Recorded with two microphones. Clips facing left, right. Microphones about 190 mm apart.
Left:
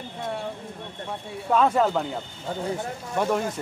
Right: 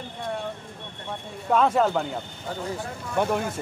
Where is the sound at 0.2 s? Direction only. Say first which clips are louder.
Even; 5° left (ahead or behind).